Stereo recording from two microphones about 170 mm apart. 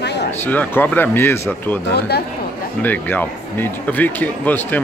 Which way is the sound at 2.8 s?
10° left (ahead or behind).